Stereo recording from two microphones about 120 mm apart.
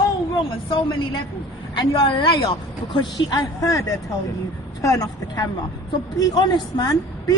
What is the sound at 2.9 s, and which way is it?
Speech, 40° left (ahead or behind).